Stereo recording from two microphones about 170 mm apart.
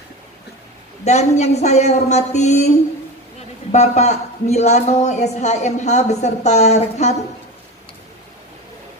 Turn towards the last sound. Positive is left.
turn(degrees=40)  # may be behind; listen again after turning